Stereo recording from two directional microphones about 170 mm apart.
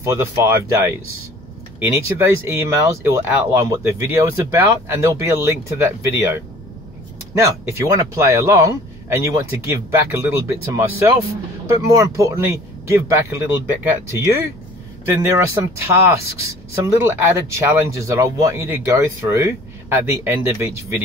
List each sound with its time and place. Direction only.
0.0 s speech: 15° right (ahead or behind)
15.0 s speech: 15° right (ahead or behind)